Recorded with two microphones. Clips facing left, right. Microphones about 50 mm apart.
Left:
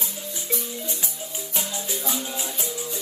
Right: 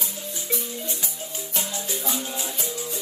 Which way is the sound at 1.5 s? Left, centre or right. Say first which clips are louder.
Even; left.